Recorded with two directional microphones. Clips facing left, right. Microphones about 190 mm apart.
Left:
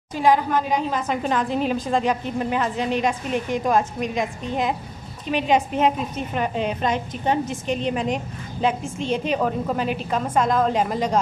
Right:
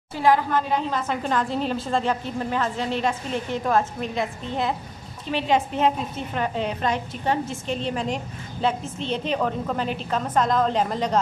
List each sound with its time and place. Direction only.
0.1 s a woman's voice: 15° left (ahead or behind)